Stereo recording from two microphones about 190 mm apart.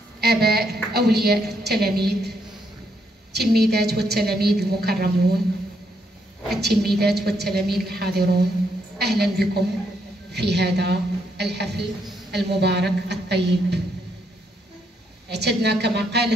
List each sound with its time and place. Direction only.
0.2 s a woman's voice: 55° right (ahead or behind)
3.3 s a woman's voice: 60° right (ahead or behind)
6.6 s a woman's voice: 55° right (ahead or behind)
15.2 s a woman's voice: 60° right (ahead or behind)